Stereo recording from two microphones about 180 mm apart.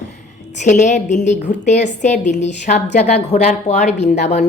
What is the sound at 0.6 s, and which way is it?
A woman's voice, 40° left (ahead or behind).